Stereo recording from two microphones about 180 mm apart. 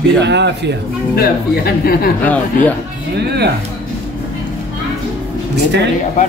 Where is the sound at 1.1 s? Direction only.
60° left (ahead or behind).